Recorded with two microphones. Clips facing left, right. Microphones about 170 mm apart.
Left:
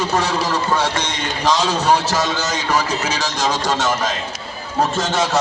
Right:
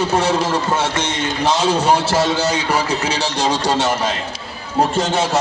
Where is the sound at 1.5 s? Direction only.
25° right (ahead or behind).